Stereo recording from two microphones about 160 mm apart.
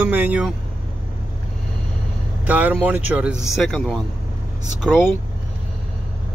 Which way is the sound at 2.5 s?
10° right (ahead or behind).